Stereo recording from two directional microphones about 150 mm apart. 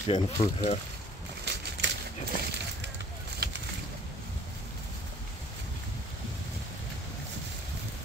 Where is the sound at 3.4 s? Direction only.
90° right.